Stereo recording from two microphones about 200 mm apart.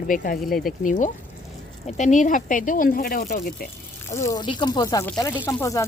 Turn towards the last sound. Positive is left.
turn(degrees=15)  # may be behind; listen again after turning